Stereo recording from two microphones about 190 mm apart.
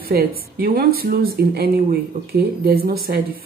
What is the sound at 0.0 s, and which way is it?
Speech, 55° right (ahead or behind).